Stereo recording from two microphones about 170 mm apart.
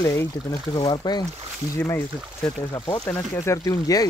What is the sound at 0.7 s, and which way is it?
Speech, 25° left (ahead or behind).